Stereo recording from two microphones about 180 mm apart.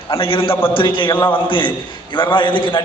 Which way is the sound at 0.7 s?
25° left (ahead or behind).